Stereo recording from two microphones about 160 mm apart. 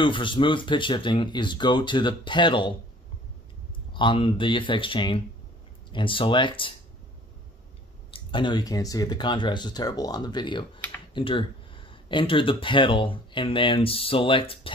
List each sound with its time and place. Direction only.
0.0 s speech: 30° left (ahead or behind)
3.9 s speech: 30° left (ahead or behind)
8.1 s speech: 30° left (ahead or behind)